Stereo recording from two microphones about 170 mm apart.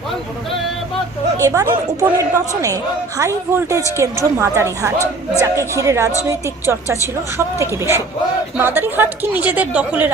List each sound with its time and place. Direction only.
1.4 s a man's voice: 20° right (ahead or behind)